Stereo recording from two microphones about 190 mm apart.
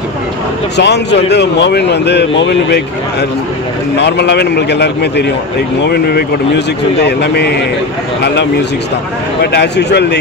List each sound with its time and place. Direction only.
0.7 s speech: 65° left (ahead or behind)
9.4 s speech: 60° left (ahead or behind)